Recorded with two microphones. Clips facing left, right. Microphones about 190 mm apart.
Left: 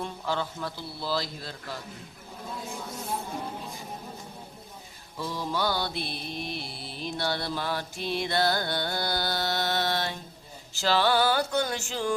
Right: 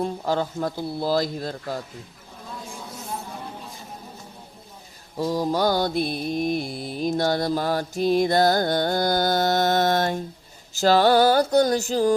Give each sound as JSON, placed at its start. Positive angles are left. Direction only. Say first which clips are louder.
{"t": 0.0, "sound": "mantra", "louder": "right 7 dB", "side_deg": -40}
{"t": 5.1, "sound": "mantra", "louder": "right 8 dB", "side_deg": -40}
{"t": 10.8, "sound": "a sound", "louder": "right 7 dB", "side_deg": -45}